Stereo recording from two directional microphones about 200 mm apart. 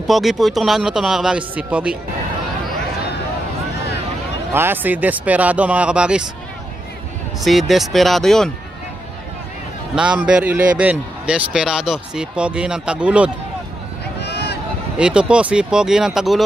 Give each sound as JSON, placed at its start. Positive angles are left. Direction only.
{"t": 0.0, "sound": "a man's voice", "side_deg": 0}
{"t": 4.6, "sound": "speech", "side_deg": -10}
{"t": 7.4, "sound": "a man's voice", "side_deg": 0}
{"t": 9.9, "sound": "a man's voice", "side_deg": -5}
{"t": 14.2, "sound": "a sound", "side_deg": 55}
{"t": 15.0, "sound": "a man's voice", "side_deg": -5}